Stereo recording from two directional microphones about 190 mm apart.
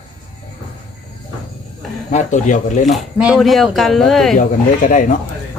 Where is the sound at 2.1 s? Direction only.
40° left (ahead or behind).